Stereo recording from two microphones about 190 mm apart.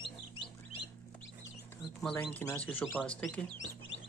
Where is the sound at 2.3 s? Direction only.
10° left (ahead or behind).